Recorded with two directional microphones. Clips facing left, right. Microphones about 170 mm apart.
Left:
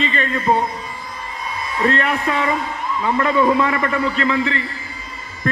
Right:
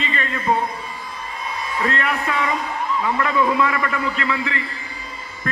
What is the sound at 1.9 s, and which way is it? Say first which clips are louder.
Speech: left 5 dB; 30° left (ahead or behind).